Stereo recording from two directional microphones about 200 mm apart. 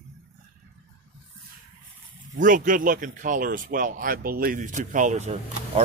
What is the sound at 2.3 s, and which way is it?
Speech, 40° right (ahead or behind).